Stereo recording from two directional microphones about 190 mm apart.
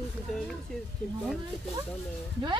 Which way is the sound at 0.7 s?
Centre (ahead or behind).